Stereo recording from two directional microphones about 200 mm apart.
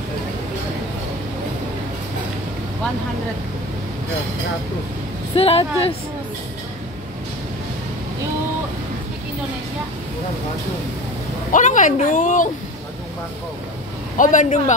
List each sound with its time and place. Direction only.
5.3 s speech: 30° left (ahead or behind)
11.5 s a woman's voice: 40° left (ahead or behind)
14.1 s a woman's voice: 40° left (ahead or behind)